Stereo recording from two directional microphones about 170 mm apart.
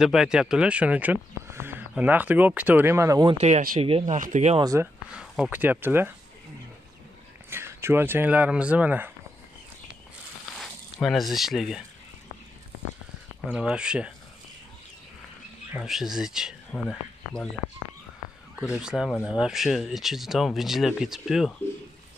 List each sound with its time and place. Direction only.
0.0 s speech: 5° right (ahead or behind)
3.3 s speech: 40° right (ahead or behind)
4.6 s speech: 20° right (ahead or behind)
5.1 s speech: 5° right (ahead or behind)
7.4 s speech: 15° right (ahead or behind)
10.6 s speech: centre (ahead or behind)
13.5 s speech: 5° right (ahead or behind)
15.7 s speech: centre (ahead or behind)
18.8 s speech: 5° right (ahead or behind)